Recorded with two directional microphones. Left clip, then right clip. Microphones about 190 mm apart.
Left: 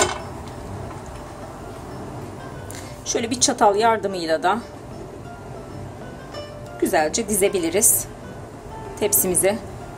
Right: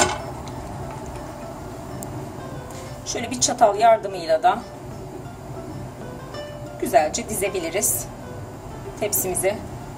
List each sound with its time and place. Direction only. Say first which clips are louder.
3.1 s speech: left 3 dB; 40° left (ahead or behind)
6.8 s speech: right 1 dB; 40° left (ahead or behind)
9.0 s a woman's voice: left 3 dB; 45° left (ahead or behind)